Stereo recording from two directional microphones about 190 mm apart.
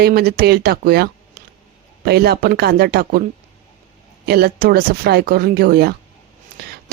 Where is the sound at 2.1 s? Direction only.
55° right (ahead or behind).